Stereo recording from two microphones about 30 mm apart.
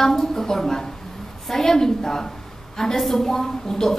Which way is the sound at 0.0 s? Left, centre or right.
Centre.